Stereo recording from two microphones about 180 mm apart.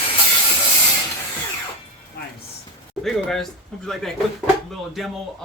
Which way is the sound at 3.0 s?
Centre (ahead or behind).